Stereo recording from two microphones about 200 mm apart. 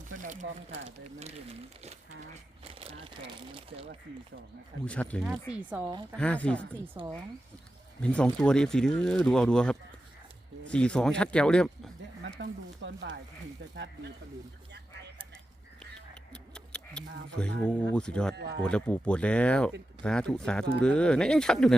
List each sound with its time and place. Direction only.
0.2 s speech: 40° right (ahead or behind)
2.7 s crumpling: 30° right (ahead or behind)
4.9 s speech: 5° left (ahead or behind)
5.9 s speech: 20° right (ahead or behind)
6.1 s speech: 5° left (ahead or behind)
7.0 s speech: 20° right (ahead or behind)
8.0 s speech: 5° left (ahead or behind)
12.4 s speech: 65° right (ahead or behind)
16.3 s a sound: 5° left (ahead or behind)
17.7 s speech: 5° left (ahead or behind)
18.3 s speech: 55° right (ahead or behind)
18.6 s speech: 5° left (ahead or behind)